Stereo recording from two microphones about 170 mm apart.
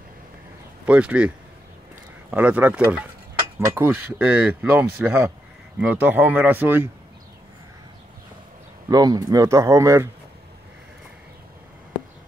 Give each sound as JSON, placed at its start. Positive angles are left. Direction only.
{"t": 0.8, "sound": "speech", "side_deg": -5}
{"t": 2.3, "sound": "speech", "side_deg": -10}
{"t": 8.8, "sound": "speech", "side_deg": -20}